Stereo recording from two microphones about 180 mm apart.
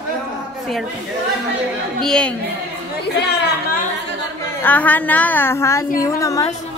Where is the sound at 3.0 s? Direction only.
70° left (ahead or behind).